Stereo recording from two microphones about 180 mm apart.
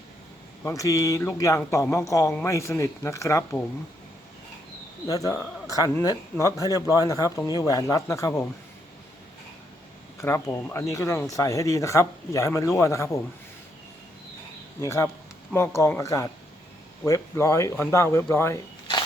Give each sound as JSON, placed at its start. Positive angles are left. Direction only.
{"t": 0.6, "sound": "a man's voice", "side_deg": 15}
{"t": 5.0, "sound": "a man's voice", "side_deg": 20}
{"t": 10.2, "sound": "a man's voice", "side_deg": 15}
{"t": 14.8, "sound": "a man's voice", "side_deg": 15}